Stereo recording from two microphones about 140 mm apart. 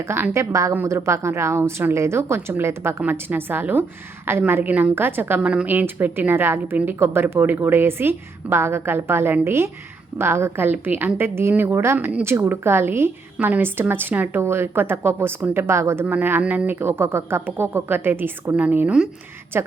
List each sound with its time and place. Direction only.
0.1 s a woman's voice: 20° right (ahead or behind)